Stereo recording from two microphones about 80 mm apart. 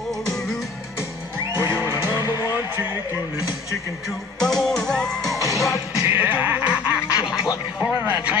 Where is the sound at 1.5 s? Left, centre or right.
Right.